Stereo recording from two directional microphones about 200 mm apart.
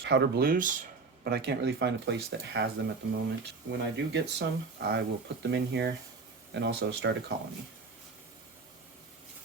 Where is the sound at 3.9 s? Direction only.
60° right (ahead or behind).